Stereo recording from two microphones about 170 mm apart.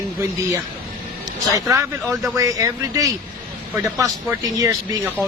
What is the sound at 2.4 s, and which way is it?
Speech, 20° right (ahead or behind).